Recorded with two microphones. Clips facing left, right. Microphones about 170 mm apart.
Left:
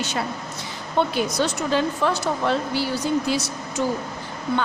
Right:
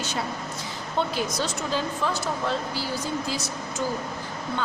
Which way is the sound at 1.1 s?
65° left (ahead or behind).